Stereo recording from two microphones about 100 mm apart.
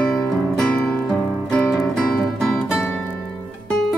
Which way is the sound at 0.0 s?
15° left (ahead or behind).